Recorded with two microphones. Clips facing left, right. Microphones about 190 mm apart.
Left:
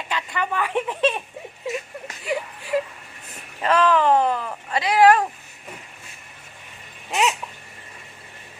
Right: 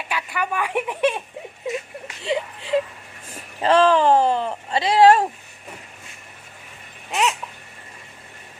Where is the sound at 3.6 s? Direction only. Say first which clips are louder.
Right 3 dB; 30° right (ahead or behind).